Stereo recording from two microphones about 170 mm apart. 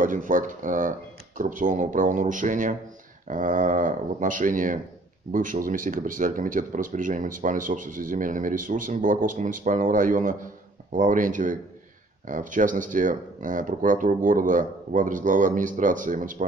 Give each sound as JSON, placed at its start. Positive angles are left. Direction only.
{"t": 0.0, "sound": "speech", "side_deg": -50}